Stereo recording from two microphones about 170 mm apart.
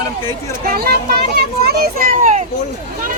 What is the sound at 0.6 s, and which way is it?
Children playing, 65° right (ahead or behind).